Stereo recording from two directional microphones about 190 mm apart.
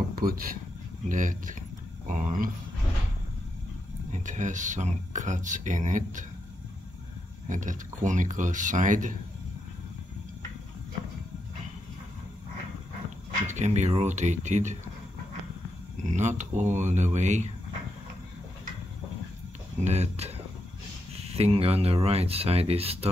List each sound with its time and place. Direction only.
0.1 s speech: 50° right (ahead or behind)
4.1 s speech: 40° right (ahead or behind)
7.4 s speech: 40° right (ahead or behind)
13.5 s speech: 35° right (ahead or behind)
16.1 s speech: 40° right (ahead or behind)
19.8 s speech: 35° right (ahead or behind)